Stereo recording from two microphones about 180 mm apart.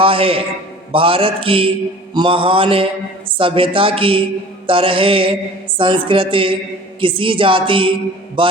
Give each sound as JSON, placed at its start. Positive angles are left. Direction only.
{"t": 0.0, "sound": "a man's voice", "side_deg": -30}
{"t": 0.9, "sound": "mantra", "side_deg": -30}